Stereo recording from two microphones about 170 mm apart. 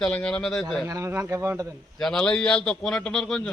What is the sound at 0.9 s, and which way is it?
Speech, 15° right (ahead or behind).